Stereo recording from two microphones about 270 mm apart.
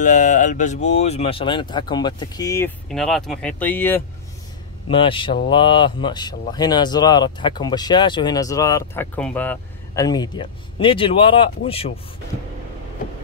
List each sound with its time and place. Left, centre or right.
0.0 s mantra: left
0.9 s speech: left; by 4.0 s centre
4.8 s speech: centre